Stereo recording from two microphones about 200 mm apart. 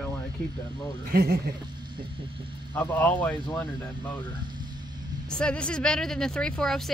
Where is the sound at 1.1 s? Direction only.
50° right (ahead or behind).